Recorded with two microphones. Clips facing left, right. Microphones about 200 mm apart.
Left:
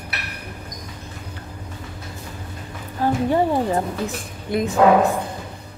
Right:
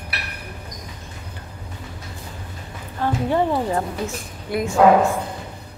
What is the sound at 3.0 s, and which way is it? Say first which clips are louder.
A woman's voice: left 2 dB; 15° left (ahead or behind).